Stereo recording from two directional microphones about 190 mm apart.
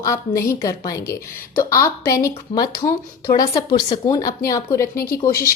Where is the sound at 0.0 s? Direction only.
15° left (ahead or behind).